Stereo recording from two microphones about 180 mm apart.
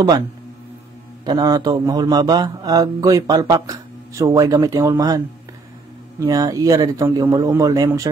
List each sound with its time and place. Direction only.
1.2 s speech: 20° right (ahead or behind)